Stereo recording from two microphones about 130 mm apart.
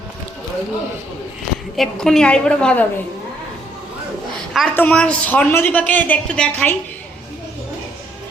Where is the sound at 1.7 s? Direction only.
5° left (ahead or behind).